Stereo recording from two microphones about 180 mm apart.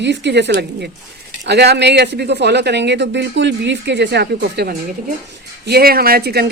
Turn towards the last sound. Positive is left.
turn(degrees=-60)  # may be behind; listen again after turning